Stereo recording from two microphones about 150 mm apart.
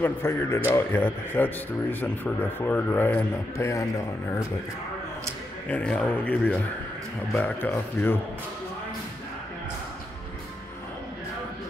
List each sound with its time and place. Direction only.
0.0 s speech: 15° left (ahead or behind)
5.7 s speech: 5° left (ahead or behind)